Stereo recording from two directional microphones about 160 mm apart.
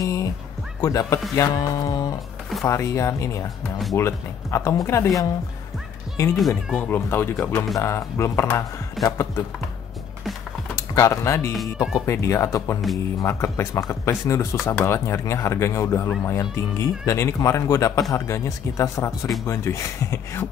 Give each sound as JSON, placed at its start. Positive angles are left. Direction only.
{"t": 0.0, "sound": "music", "side_deg": 20}
{"t": 0.7, "sound": "speech", "side_deg": 20}
{"t": 10.8, "sound": "speech", "side_deg": 20}
{"t": 11.5, "sound": "speech", "side_deg": 0}
{"t": 12.1, "sound": "speech", "side_deg": 20}